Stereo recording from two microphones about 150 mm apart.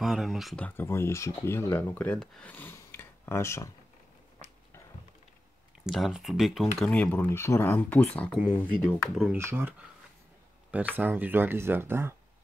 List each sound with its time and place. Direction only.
0.0 s speech: centre (ahead or behind)
0.7 s speech: 15° left (ahead or behind)
5.9 s speech: centre (ahead or behind)
9.1 s speech: 5° right (ahead or behind)
9.4 s speech: 15° right (ahead or behind)